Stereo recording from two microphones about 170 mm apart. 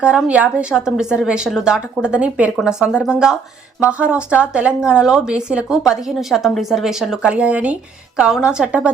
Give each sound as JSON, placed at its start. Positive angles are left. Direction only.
{"t": 0.0, "sound": "speech", "side_deg": -5}